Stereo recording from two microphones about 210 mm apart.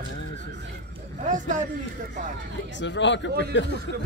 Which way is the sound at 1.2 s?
35° right (ahead or behind).